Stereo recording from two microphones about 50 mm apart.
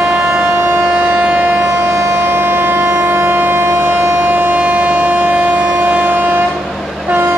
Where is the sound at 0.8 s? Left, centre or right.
Right.